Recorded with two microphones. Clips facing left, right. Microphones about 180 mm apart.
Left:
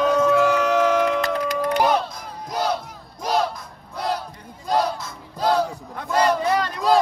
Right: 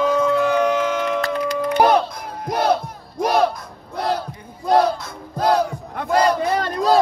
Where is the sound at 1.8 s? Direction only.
50° right (ahead or behind).